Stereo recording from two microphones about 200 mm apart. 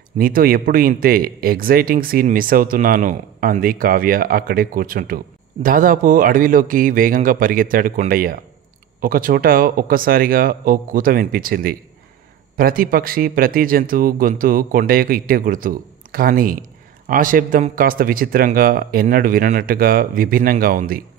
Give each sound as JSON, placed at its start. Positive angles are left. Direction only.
{"t": 0.2, "sound": "speech", "side_deg": -45}